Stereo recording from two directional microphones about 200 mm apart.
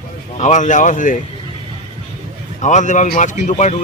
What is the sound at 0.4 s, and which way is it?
Speech, 35° left (ahead or behind).